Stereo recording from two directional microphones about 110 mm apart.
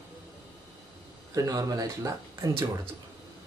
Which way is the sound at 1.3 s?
35° right (ahead or behind).